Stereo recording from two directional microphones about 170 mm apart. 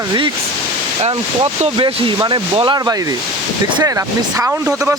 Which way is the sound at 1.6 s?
35° right (ahead or behind).